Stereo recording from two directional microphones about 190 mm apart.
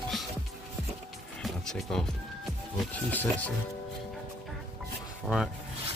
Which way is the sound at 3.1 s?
10° left (ahead or behind).